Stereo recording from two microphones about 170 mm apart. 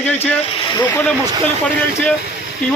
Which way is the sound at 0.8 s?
10° left (ahead or behind).